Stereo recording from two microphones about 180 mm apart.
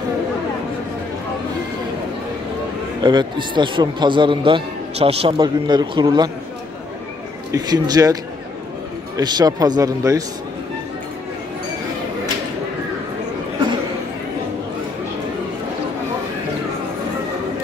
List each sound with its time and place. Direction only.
3.0 s a man's voice: 25° right (ahead or behind)
7.5 s a man's voice: 20° right (ahead or behind)